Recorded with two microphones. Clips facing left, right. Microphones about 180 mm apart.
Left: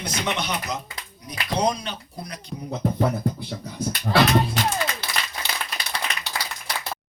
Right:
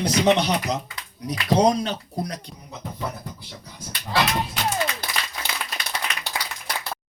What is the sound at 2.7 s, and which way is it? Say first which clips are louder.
Beatboxing: left 9 dB; 60° left (ahead or behind).